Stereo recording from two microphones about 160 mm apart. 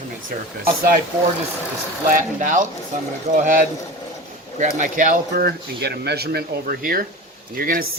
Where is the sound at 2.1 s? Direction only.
55° right (ahead or behind).